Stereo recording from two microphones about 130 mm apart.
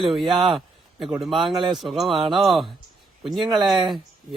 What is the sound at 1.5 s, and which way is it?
Speech, 40° right (ahead or behind).